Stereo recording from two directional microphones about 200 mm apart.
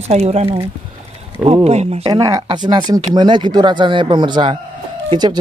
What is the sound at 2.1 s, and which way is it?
Speech, 15° right (ahead or behind).